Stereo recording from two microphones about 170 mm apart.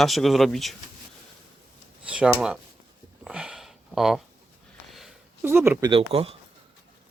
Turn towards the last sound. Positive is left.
turn(degrees=-35)  # may be behind; listen again after turning